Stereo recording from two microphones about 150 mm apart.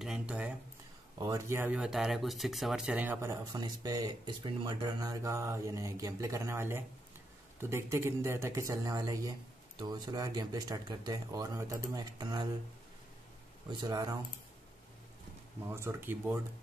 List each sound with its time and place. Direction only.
0.0 s a sound: 5° right (ahead or behind)
1.1 s speech: 25° right (ahead or behind)
1.8 s speech: 5° right (ahead or behind); by 12.4 s 30° right (ahead or behind)
13.7 s speech: 25° right (ahead or behind)
15.7 s speech: 15° right (ahead or behind)